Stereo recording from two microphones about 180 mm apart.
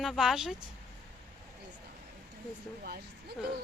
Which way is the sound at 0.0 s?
Centre (ahead or behind).